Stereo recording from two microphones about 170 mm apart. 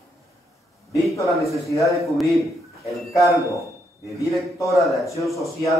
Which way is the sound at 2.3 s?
20° right (ahead or behind).